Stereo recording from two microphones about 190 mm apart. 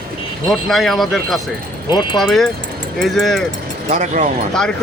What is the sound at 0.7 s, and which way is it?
Speech, centre (ahead or behind).